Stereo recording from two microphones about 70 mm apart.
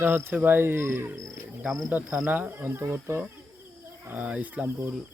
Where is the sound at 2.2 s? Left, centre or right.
Right.